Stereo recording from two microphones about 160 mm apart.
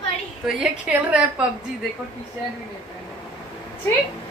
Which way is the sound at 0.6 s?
5° right (ahead or behind).